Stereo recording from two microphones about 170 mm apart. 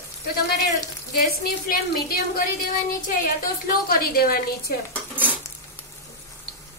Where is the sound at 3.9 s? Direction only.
60° left (ahead or behind).